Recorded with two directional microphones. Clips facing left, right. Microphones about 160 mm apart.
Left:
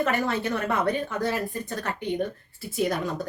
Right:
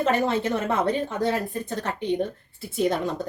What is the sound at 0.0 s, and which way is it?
A woman's voice, 25° right (ahead or behind).